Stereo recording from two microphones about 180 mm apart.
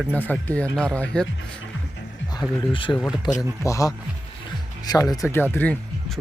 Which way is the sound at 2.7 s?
30° left (ahead or behind).